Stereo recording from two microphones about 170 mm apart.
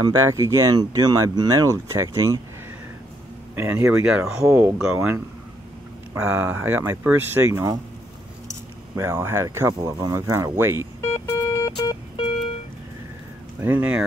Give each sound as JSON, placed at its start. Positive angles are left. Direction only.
{"t": 0.0, "sound": "speech", "side_deg": -20}
{"t": 3.5, "sound": "speech", "side_deg": -10}
{"t": 8.9, "sound": "speech", "side_deg": -15}
{"t": 11.0, "sound": "music", "side_deg": 15}
{"t": 13.6, "sound": "speech", "side_deg": -10}